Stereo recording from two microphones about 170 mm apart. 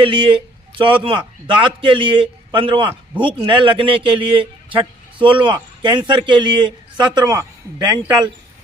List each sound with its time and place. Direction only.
0.0 s a man's voice: 30° right (ahead or behind)